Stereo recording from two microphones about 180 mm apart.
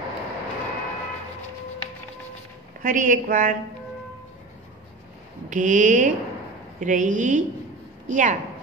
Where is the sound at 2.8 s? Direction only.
50° right (ahead or behind).